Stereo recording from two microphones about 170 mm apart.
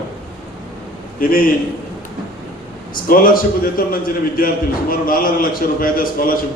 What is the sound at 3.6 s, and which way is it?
A man's voice, 60° left (ahead or behind).